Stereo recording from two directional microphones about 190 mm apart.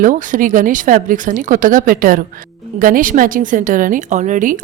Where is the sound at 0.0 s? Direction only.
45° right (ahead or behind).